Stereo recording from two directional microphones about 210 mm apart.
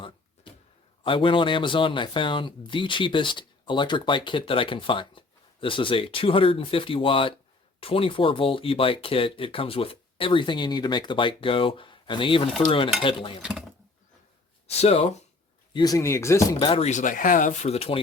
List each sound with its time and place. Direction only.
1.0 s speech: 25° left (ahead or behind)
13.4 s speech: centre (ahead or behind)
14.7 s speech: 30° left (ahead or behind)
15.7 s speech: 20° left (ahead or behind)